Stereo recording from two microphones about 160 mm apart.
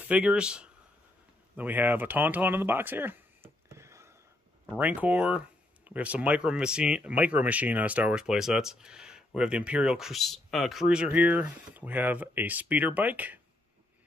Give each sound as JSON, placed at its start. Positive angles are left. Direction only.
{"t": 0.0, "sound": "speech", "side_deg": -10}
{"t": 3.6, "sound": "a sound", "side_deg": -15}
{"t": 4.6, "sound": "speech", "side_deg": -10}